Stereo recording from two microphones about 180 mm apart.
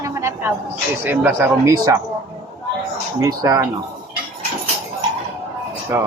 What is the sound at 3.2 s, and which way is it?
Speech, 20° right (ahead or behind).